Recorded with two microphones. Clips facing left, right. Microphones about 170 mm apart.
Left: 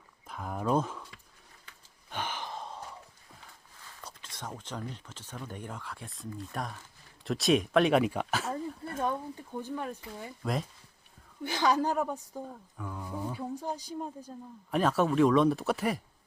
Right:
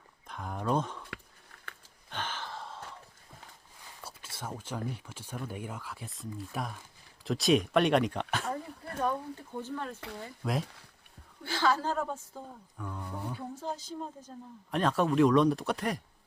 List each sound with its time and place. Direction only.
0.3 s a sound: 5° left (ahead or behind)
2.0 s gasp: 10° left (ahead or behind)
4.0 s speech: 5° right (ahead or behind)
9.6 s a woman's voice: 15° left (ahead or behind)
10.4 s speech: centre (ahead or behind)
11.4 s a woman's voice: 15° left (ahead or behind)
12.7 s a sound: 5° left (ahead or behind)
13.3 s speech: 15° left (ahead or behind)